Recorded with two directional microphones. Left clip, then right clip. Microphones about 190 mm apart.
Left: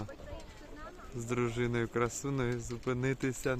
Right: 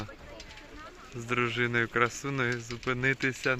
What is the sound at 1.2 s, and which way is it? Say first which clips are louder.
Speech: right 6 dB; 5° left (ahead or behind).